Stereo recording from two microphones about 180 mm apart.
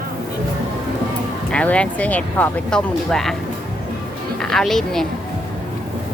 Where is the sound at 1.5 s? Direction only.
5° left (ahead or behind).